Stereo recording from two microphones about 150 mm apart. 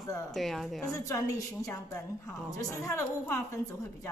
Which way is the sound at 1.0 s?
20° left (ahead or behind).